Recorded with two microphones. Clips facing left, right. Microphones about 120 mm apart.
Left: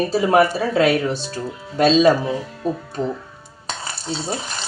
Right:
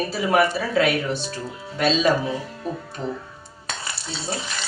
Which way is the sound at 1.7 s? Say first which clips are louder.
Left 6 dB; 40° left (ahead or behind).